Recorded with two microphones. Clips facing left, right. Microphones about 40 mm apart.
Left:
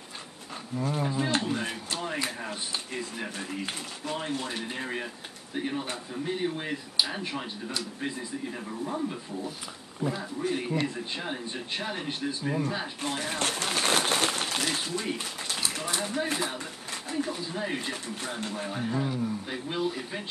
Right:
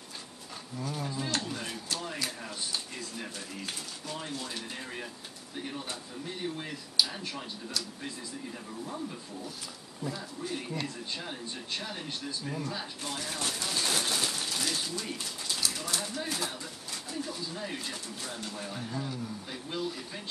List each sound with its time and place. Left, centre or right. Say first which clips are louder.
0.8 s speech: left 6 dB; left
13.4 s a sound: left 4 dB; left
17.1 s speech: left 6 dB; left